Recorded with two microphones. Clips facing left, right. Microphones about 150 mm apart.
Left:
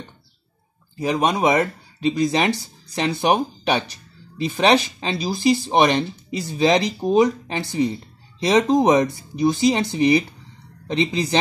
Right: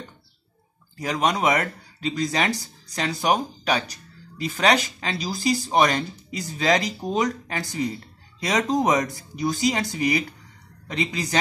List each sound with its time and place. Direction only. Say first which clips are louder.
0.9 s speech: left 3 dB; 25° left (ahead or behind)